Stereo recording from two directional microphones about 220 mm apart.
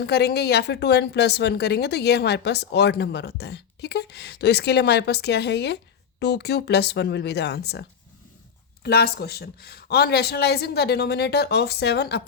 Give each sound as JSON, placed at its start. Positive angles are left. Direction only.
{"t": 0.0, "sound": "a woman's voice", "side_deg": 50}